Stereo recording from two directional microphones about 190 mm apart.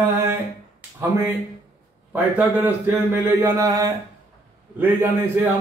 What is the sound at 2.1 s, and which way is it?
Speech, 10° right (ahead or behind).